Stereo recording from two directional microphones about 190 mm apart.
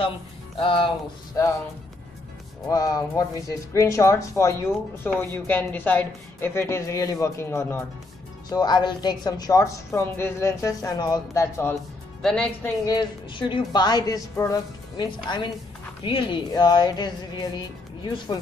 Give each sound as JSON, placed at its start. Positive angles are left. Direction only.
{"t": 0.6, "sound": "speech", "side_deg": 25}
{"t": 2.7, "sound": "speech", "side_deg": 20}
{"t": 12.2, "sound": "speech", "side_deg": 5}
{"t": 12.8, "sound": "speech", "side_deg": 25}